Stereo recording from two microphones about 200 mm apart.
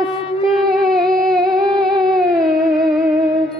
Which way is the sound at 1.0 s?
Centre (ahead or behind).